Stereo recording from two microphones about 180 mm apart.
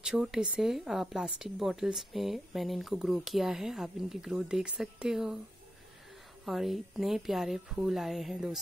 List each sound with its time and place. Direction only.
0.0 s speech: 5° right (ahead or behind)
6.4 s speech: centre (ahead or behind)